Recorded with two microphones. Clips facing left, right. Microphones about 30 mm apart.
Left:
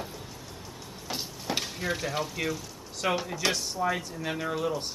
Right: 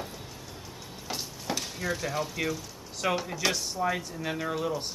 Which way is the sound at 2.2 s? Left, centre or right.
Centre.